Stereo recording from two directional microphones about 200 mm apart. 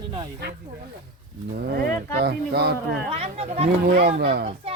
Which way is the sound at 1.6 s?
50° right (ahead or behind).